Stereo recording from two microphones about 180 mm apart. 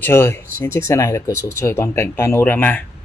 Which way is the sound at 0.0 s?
15° left (ahead or behind).